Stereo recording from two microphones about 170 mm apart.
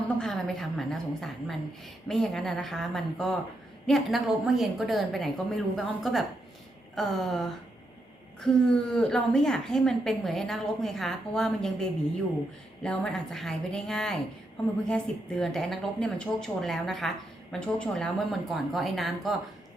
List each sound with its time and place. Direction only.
0.2 s a woman's voice: centre (ahead or behind)